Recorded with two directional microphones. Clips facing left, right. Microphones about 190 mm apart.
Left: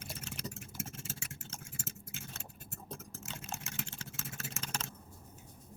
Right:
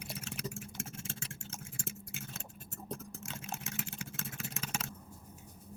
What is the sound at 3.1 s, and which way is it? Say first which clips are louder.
Vehicle: right 1 dB; centre (ahead or behind).